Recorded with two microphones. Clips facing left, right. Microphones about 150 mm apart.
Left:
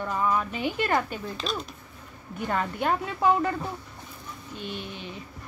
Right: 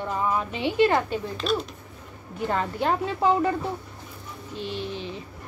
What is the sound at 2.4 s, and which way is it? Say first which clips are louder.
A woman's voice: right 2 dB; 30° right (ahead or behind).